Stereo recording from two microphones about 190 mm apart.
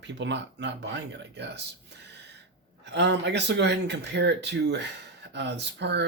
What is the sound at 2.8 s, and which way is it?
Speech, 65° right (ahead or behind).